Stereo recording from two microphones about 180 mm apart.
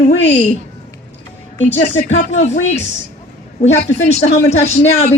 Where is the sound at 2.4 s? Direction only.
40° left (ahead or behind).